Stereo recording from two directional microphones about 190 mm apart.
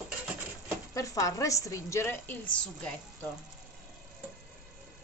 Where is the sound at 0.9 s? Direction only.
15° left (ahead or behind).